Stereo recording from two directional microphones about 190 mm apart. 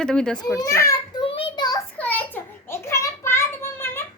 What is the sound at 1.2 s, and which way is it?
Child singing, 25° left (ahead or behind).